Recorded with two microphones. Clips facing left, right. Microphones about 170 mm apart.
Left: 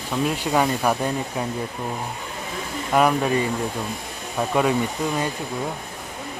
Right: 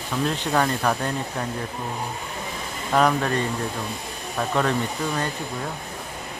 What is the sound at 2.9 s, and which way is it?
Speech, 10° left (ahead or behind).